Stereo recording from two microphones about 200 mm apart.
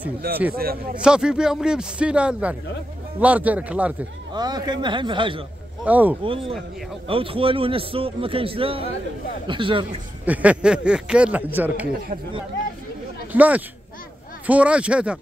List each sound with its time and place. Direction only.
0.2 s a man's voice: 50° right (ahead or behind)
0.9 s a man's voice: 5° right (ahead or behind)
4.3 s a man's voice: 20° right (ahead or behind)
5.9 s a man's voice: 10° right (ahead or behind)
6.2 s a man's voice: 25° right (ahead or behind)
10.2 s a man's voice: 5° right (ahead or behind)
13.3 s a man's voice: 5° right (ahead or behind)